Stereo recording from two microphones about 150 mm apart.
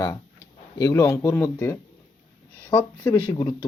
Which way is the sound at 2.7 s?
30° left (ahead or behind).